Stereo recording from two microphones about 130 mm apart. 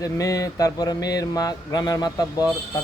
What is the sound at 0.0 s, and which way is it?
Speech, 25° left (ahead or behind).